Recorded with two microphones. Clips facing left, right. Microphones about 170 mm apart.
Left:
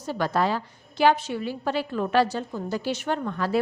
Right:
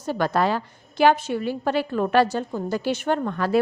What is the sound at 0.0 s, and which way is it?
A woman's voice, 55° right (ahead or behind).